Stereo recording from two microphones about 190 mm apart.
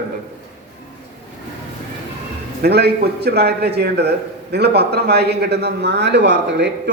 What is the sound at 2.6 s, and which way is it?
A man's voice, 60° right (ahead or behind).